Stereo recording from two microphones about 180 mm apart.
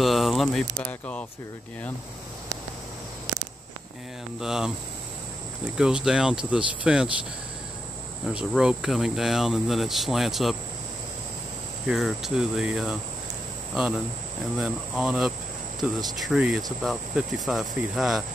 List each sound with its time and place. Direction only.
0.0 s speech: centre (ahead or behind)
4.4 s speech: 5° right (ahead or behind)
5.8 s speech: 5° right (ahead or behind)
8.3 s speech: 5° right (ahead or behind)
11.9 s speech: centre (ahead or behind)